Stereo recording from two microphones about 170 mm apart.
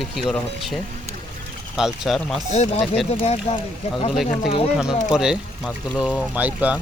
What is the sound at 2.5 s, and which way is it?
Speech, 40° left (ahead or behind).